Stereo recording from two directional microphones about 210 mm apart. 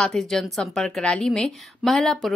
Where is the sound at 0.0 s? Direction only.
Centre (ahead or behind).